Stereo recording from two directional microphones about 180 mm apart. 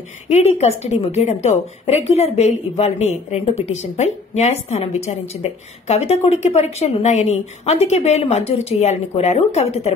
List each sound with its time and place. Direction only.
0.3 s speech: 35° left (ahead or behind)